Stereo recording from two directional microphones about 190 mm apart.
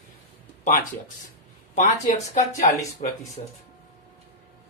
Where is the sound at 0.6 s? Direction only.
45° left (ahead or behind).